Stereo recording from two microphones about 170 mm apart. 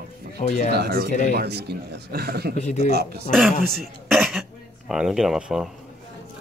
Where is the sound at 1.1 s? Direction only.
45° left (ahead or behind).